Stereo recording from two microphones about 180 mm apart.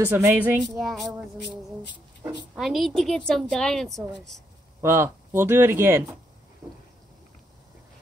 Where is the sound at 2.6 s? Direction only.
Centre (ahead or behind).